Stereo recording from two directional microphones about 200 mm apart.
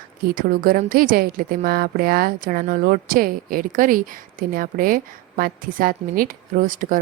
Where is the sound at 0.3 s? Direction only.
45° right (ahead or behind).